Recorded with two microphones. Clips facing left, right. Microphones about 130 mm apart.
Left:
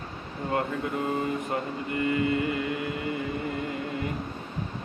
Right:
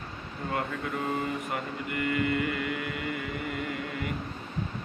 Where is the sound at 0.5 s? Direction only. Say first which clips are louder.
Left 4 dB; 20° left (ahead or behind).